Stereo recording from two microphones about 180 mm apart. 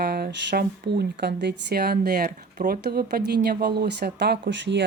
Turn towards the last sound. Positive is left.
turn(degrees=-75)  # may be behind; listen again after turning